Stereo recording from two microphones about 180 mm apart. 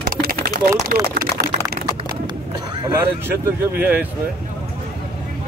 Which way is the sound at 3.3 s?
10° right (ahead or behind).